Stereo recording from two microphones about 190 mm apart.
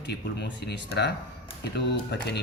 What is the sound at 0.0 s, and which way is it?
Speech, 65° left (ahead or behind).